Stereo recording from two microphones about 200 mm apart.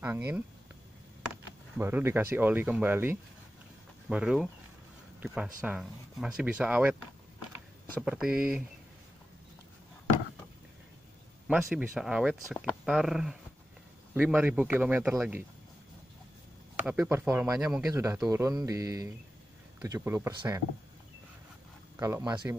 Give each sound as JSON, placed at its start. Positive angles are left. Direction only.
{"t": 0.0, "sound": "speech", "side_deg": -10}
{"t": 1.8, "sound": "speech", "side_deg": -10}
{"t": 8.0, "sound": "speech", "side_deg": -5}
{"t": 11.4, "sound": "speech", "side_deg": -5}
{"t": 16.8, "sound": "speech", "side_deg": -10}
{"t": 21.9, "sound": "speech", "side_deg": -15}